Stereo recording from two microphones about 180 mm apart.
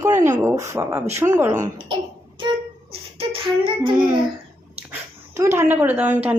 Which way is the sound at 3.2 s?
30° right (ahead or behind).